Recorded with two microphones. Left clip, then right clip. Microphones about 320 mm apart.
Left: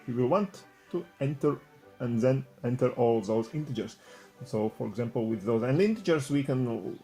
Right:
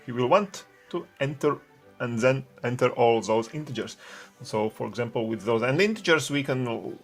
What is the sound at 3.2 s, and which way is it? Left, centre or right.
Speech, right.